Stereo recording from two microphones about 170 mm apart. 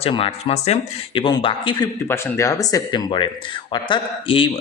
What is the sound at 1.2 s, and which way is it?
Speech, 30° left (ahead or behind).